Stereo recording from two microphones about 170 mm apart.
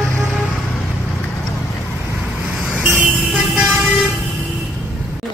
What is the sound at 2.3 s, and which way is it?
Vehicle, 5° right (ahead or behind).